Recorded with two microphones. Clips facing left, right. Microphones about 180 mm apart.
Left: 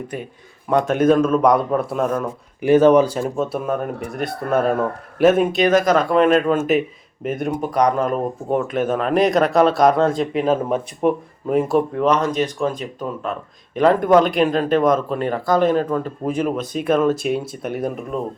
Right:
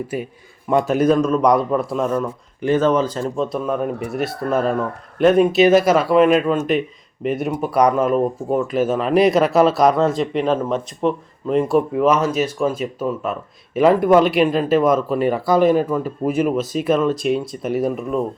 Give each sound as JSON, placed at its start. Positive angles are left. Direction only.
{"t": 0.7, "sound": "speech", "side_deg": -5}
{"t": 11.9, "sound": "speech", "side_deg": -5}